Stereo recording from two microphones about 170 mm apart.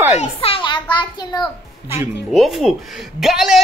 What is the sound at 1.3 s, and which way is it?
Speech, 25° left (ahead or behind).